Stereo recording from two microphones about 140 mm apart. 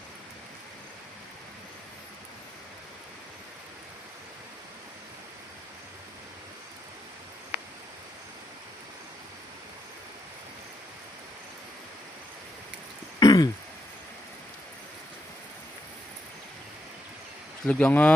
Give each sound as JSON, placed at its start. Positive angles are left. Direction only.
{"t": 13.1, "sound": "throat clearing", "side_deg": 30}
{"t": 17.7, "sound": "speech", "side_deg": 10}